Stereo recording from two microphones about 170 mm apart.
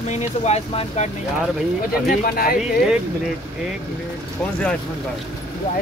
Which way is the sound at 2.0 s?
55° left (ahead or behind).